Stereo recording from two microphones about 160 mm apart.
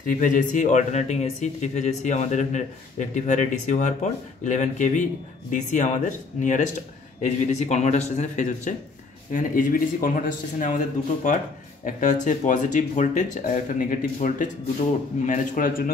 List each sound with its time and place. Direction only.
0.0 s speech: 55° left (ahead or behind)
11.8 s speech: 50° left (ahead or behind)